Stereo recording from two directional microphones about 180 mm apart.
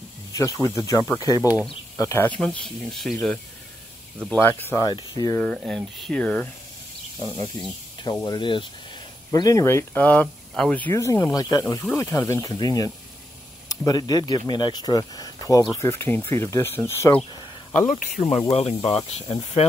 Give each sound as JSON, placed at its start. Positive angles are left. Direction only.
{"t": 0.3, "sound": "speech", "side_deg": 20}
{"t": 7.6, "sound": "speech", "side_deg": 25}
{"t": 17.7, "sound": "speech", "side_deg": 45}
{"t": 18.5, "sound": "speech", "side_deg": 35}